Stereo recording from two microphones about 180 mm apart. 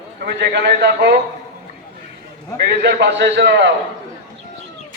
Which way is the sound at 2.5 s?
65° right (ahead or behind).